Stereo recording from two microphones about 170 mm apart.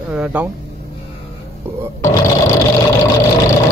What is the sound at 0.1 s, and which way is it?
Speech, 10° right (ahead or behind).